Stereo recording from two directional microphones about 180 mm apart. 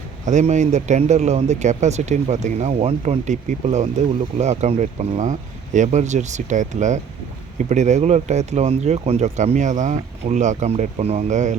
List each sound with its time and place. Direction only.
0.3 s speech: 40° right (ahead or behind)